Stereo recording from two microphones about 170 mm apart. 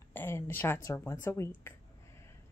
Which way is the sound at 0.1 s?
15° left (ahead or behind).